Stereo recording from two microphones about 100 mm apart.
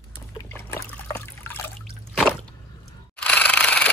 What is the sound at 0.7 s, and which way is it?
Trickle, 30° left (ahead or behind).